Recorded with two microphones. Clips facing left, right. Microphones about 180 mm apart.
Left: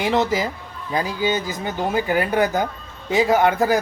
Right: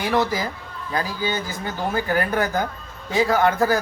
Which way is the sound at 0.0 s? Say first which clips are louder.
Left 2 dB; 20° left (ahead or behind).